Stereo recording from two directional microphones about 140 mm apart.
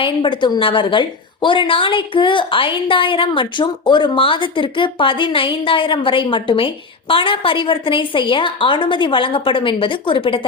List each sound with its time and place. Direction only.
0.0 s a woman's voice: 35° left (ahead or behind)